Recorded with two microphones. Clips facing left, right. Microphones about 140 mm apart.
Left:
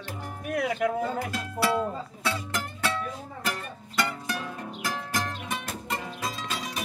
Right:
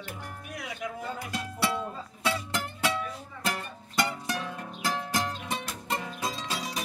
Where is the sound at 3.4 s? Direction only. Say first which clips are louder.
Right 1 dB; 15° right (ahead or behind).